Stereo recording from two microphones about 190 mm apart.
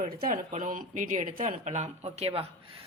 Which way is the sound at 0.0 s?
45° right (ahead or behind).